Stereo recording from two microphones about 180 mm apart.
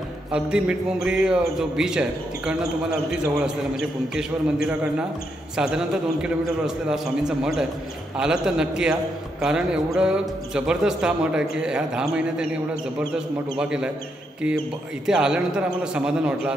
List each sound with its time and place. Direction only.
0.3 s a man's voice: 5° right (ahead or behind)
5.6 s a man's voice: 5° right (ahead or behind)
15.0 s a man's voice: 5° right (ahead or behind)